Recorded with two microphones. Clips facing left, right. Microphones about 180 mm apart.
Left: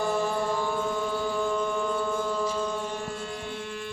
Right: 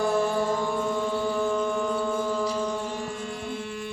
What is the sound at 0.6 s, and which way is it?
Music, 15° right (ahead or behind).